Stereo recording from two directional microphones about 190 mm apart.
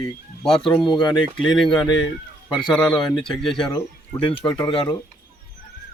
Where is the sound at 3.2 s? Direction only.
5° left (ahead or behind).